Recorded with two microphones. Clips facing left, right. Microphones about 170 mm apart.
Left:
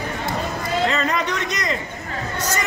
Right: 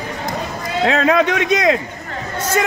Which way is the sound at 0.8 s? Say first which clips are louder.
Right 11 dB; 70° right (ahead or behind).